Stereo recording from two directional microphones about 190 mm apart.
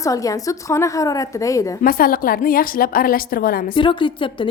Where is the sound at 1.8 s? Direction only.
50° left (ahead or behind).